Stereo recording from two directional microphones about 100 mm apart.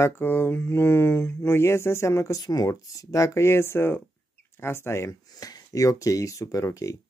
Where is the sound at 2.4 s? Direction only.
40° left (ahead or behind).